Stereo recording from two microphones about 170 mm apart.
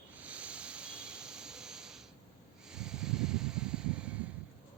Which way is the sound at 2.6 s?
5° right (ahead or behind).